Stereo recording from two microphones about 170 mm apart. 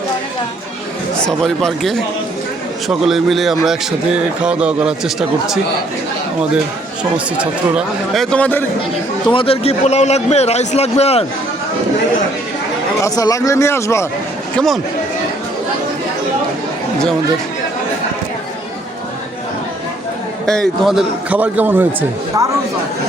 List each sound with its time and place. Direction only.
1.2 s speech: centre (ahead or behind)
7.3 s speech: 5° right (ahead or behind); by 8.6 s 10° left (ahead or behind)
9.2 s a man's voice: 30° left (ahead or behind)
13.0 s speech: 20° left (ahead or behind)
14.5 s speech: centre (ahead or behind)
20.5 s a man's voice: centre (ahead or behind); by 22.5 s 20° right (ahead or behind)